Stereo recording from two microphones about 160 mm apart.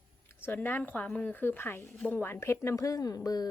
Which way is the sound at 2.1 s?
15° left (ahead or behind).